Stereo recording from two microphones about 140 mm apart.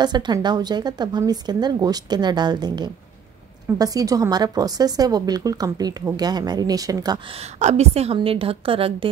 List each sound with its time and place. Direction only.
0.0 s speech: 30° right (ahead or behind)
7.5 s a woman's voice: 50° right (ahead or behind)